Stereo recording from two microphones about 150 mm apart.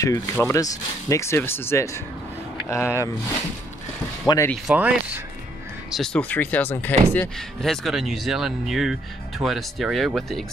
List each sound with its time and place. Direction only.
0.0 s speech: 20° left (ahead or behind)
4.6 s speech: 10° right (ahead or behind)
5.9 s speech: centre (ahead or behind)